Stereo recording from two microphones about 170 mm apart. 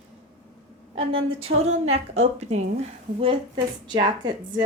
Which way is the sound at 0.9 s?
35° right (ahead or behind).